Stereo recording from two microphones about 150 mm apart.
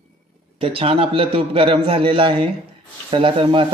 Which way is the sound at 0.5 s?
40° right (ahead or behind).